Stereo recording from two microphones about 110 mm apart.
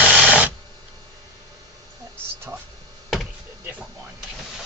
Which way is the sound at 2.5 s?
15° right (ahead or behind).